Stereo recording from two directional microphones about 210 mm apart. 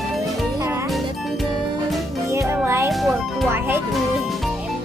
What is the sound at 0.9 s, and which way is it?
Music, centre (ahead or behind).